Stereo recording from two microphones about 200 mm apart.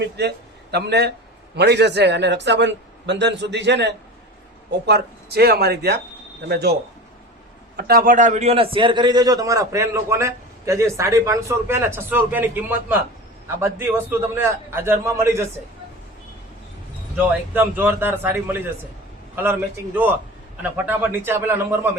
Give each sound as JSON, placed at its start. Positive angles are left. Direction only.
{"t": 0.0, "sound": "a man's voice", "side_deg": -55}
{"t": 7.8, "sound": "a man's voice", "side_deg": -50}
{"t": 17.2, "sound": "a man's voice", "side_deg": -10}